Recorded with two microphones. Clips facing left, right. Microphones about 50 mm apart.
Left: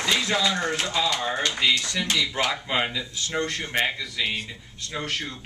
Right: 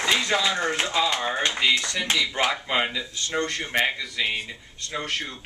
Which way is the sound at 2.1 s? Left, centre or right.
Right.